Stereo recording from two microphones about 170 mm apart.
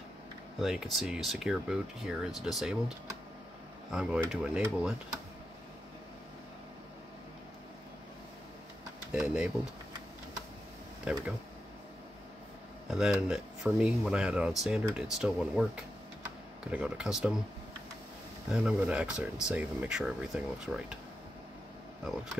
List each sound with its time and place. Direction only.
0.6 s speech: centre (ahead or behind)
3.9 s speech: 5° right (ahead or behind)
9.1 s speech: 5° right (ahead or behind)
11.1 s speech: 5° right (ahead or behind)
12.9 s speech: 5° right (ahead or behind)
18.5 s speech: 5° right (ahead or behind)